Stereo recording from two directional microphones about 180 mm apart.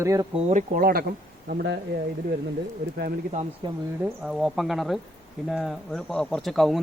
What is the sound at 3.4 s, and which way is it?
Speech, 40° right (ahead or behind).